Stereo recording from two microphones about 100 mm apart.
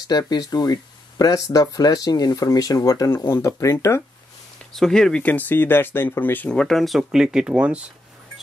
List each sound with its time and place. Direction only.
0.3 s speech: 40° left (ahead or behind)
4.7 s speech: 5° left (ahead or behind)
5.2 s speech: 15° left (ahead or behind)
6.5 s speech: 5° left (ahead or behind); by 7.8 s 10° right (ahead or behind)